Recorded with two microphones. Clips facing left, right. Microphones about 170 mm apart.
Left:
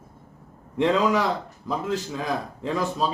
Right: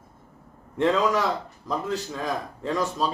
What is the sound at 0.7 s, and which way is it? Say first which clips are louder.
A man's voice: left 1 dB; centre (ahead or behind).